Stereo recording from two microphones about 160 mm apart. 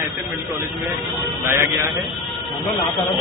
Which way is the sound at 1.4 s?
15° right (ahead or behind).